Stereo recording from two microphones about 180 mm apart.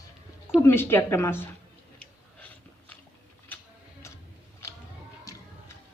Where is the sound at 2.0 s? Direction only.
10° left (ahead or behind).